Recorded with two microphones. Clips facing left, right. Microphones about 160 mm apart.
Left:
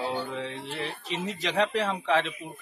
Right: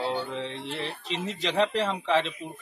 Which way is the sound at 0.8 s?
45° left (ahead or behind).